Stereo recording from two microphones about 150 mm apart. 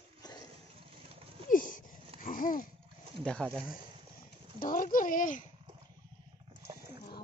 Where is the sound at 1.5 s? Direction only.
65° left (ahead or behind).